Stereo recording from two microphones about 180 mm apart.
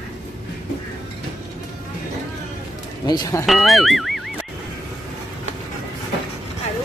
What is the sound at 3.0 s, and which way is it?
Speech, 25° left (ahead or behind).